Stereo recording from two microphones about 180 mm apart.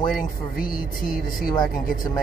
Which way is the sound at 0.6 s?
50° left (ahead or behind).